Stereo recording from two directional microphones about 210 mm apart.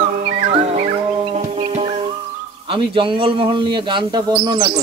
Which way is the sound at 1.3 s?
30° right (ahead or behind).